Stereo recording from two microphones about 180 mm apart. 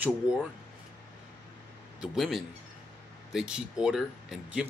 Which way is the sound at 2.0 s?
Centre (ahead or behind).